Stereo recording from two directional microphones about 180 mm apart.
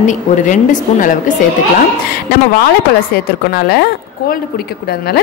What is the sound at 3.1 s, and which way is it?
Speech, 60° left (ahead or behind).